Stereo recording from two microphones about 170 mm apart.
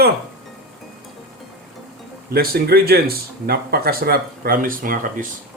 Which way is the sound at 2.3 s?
60° right (ahead or behind).